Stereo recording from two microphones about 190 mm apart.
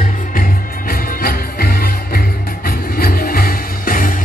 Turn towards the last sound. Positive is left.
turn(degrees=45)  # may be behind; listen again after turning